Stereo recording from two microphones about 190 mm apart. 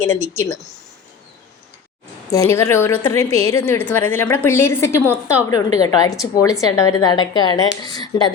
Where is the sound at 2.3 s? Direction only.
15° left (ahead or behind).